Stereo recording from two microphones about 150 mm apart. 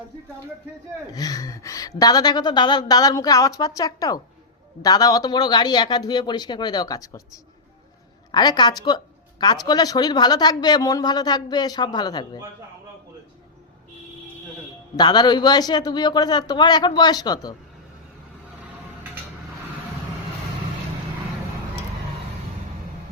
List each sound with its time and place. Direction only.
1.1 s speech: 25° left (ahead or behind)
8.3 s speech: 30° left (ahead or behind)
14.9 s speech: 30° left (ahead or behind)